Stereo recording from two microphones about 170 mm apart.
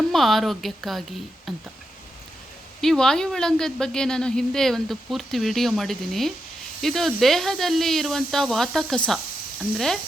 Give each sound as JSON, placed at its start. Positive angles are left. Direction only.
{"t": 0.1, "sound": "speech", "side_deg": 0}
{"t": 2.8, "sound": "speech", "side_deg": 5}